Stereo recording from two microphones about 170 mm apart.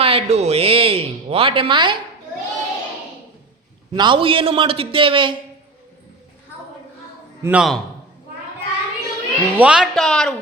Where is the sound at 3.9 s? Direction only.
30° right (ahead or behind).